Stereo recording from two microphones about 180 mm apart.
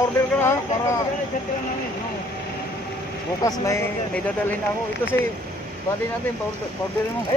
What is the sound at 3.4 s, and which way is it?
Speech, 20° left (ahead or behind).